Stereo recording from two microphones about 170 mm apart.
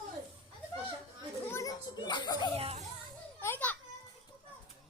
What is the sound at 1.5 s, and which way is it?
Children playing, 20° left (ahead or behind).